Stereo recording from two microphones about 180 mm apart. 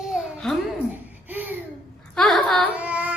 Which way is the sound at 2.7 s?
5° right (ahead or behind).